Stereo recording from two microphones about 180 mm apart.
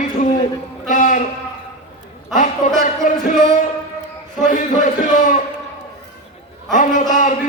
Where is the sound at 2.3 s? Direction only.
45° left (ahead or behind).